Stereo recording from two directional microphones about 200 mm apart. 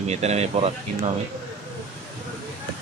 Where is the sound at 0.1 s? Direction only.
30° right (ahead or behind).